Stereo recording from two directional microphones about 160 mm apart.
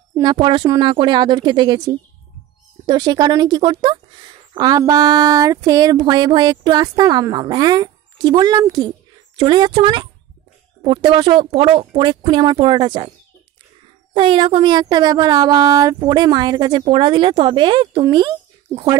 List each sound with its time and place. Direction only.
0.1 s a woman's voice: 25° right (ahead or behind)
14.1 s a woman's voice: 35° right (ahead or behind)